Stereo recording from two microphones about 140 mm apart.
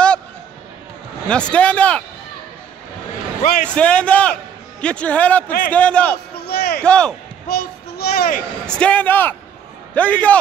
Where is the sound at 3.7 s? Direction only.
10° left (ahead or behind).